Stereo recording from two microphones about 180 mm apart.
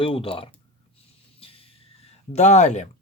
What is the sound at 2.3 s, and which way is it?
Speech, 40° left (ahead or behind).